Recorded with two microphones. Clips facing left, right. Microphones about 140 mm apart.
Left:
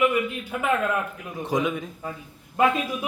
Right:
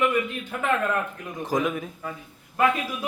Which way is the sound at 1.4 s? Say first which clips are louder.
Even; centre (ahead or behind).